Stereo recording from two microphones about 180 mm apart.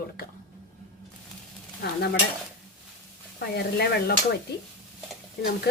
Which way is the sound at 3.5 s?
65° left (ahead or behind).